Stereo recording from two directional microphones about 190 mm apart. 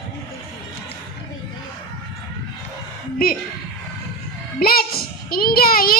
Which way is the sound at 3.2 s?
50° left (ahead or behind).